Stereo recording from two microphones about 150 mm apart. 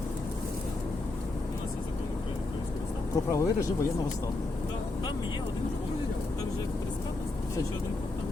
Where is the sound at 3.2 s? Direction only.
20° left (ahead or behind).